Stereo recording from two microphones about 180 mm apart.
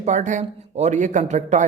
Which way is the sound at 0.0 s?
40° right (ahead or behind).